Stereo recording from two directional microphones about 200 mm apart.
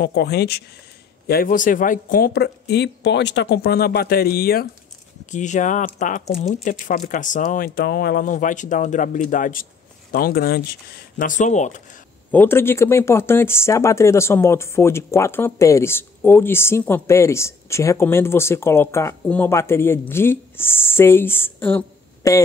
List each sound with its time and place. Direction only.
0.0 s speech: 55° left (ahead or behind)
5.3 s speech: 40° left (ahead or behind)
12.3 s speech: 10° left (ahead or behind)